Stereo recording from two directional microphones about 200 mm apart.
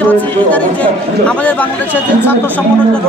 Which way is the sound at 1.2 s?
5° left (ahead or behind).